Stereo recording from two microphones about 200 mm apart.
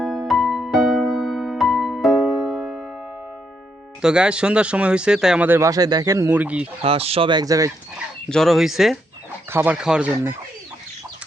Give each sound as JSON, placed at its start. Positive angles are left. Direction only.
{"t": 0.0, "sound": "music", "side_deg": 0}
{"t": 4.0, "sound": "speech", "side_deg": -5}
{"t": 6.8, "sound": "speech", "side_deg": -30}
{"t": 8.3, "sound": "speech", "side_deg": 0}